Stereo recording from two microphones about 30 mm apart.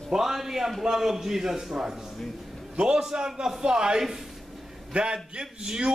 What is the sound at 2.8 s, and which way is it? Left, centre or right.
A man's voice, right.